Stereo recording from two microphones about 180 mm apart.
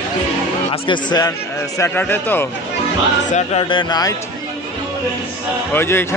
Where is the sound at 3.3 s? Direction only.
30° left (ahead or behind).